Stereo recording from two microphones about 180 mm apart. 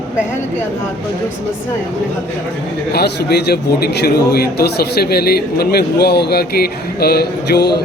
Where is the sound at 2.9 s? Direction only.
65° left (ahead or behind).